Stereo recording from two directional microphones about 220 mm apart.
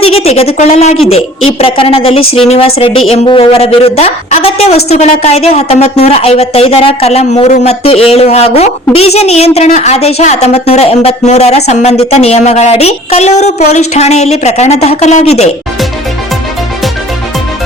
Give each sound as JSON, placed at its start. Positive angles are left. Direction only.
{"t": 0.0, "sound": "a woman's voice", "side_deg": 25}